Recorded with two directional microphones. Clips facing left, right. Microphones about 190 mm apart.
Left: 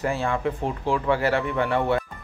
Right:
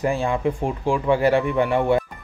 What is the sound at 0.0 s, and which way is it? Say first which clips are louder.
Speech: right 3 dB; 15° right (ahead or behind).